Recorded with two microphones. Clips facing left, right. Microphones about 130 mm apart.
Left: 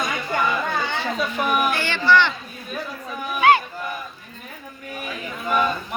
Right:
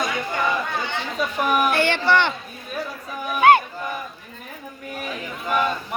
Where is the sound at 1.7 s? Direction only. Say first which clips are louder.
Even; 60° right (ahead or behind).